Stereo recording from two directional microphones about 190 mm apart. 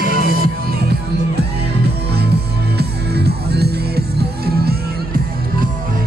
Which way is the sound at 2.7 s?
60° right (ahead or behind).